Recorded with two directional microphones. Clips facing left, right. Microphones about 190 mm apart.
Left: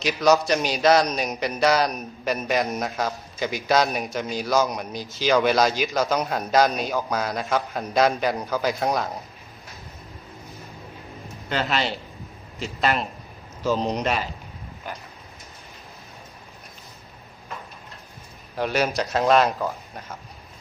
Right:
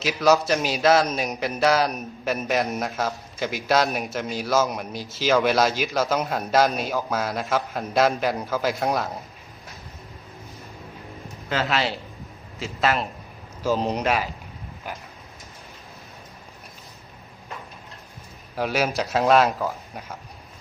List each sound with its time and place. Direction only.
0.0 s a man's voice: 5° right (ahead or behind)
11.4 s a man's voice: centre (ahead or behind)
18.5 s a man's voice: 5° right (ahead or behind)